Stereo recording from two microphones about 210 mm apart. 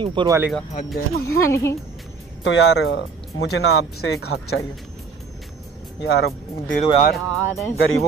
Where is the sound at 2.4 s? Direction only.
60° left (ahead or behind).